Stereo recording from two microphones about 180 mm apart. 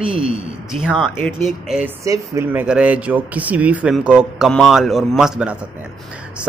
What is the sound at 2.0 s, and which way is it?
Speech, 15° right (ahead or behind).